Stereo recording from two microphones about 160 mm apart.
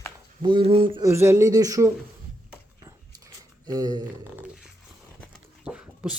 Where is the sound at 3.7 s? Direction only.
25° right (ahead or behind).